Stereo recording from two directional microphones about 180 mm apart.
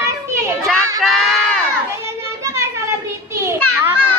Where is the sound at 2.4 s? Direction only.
15° right (ahead or behind).